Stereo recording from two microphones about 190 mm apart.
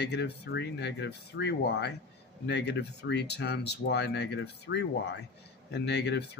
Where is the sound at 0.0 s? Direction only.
65° left (ahead or behind).